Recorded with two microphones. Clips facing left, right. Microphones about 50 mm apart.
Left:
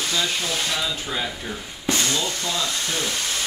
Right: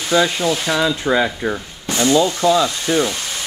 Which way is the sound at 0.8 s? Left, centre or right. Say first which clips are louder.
Right 10 dB; right.